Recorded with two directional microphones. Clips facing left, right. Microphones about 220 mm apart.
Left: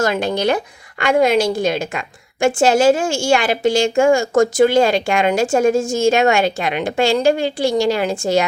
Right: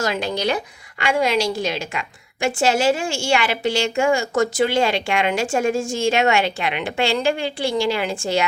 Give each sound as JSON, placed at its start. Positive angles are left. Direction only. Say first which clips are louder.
{"t": 0.0, "sound": "a woman's voice", "louder": "left 5 dB", "side_deg": 50}